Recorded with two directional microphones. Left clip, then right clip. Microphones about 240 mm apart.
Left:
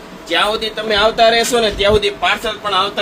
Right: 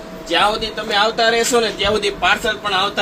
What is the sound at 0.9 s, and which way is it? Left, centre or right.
A man's voice, left.